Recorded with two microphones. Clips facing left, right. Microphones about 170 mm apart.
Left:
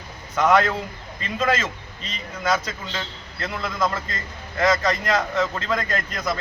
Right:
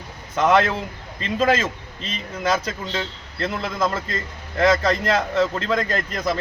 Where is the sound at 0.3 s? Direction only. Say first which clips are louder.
Right 1 dB; 25° right (ahead or behind).